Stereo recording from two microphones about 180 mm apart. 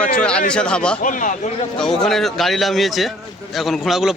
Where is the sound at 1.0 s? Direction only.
45° left (ahead or behind).